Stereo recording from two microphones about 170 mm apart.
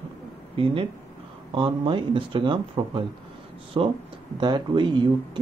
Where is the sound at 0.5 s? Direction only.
35° right (ahead or behind).